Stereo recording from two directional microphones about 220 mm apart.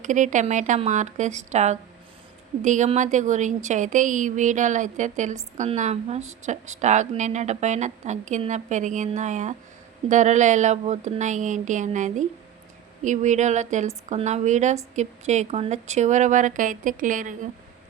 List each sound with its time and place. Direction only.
0.0 s a woman's voice: 35° right (ahead or behind)